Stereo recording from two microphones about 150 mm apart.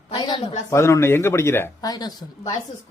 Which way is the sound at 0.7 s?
20° left (ahead or behind).